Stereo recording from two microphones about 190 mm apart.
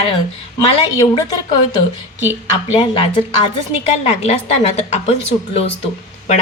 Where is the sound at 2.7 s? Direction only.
30° left (ahead or behind).